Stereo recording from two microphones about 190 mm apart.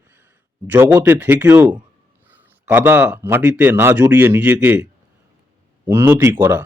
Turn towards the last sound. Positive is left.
turn(degrees=-10)  # may be behind; listen again after turning